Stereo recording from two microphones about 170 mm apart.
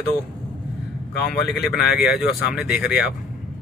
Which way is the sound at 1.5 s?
Centre (ahead or behind).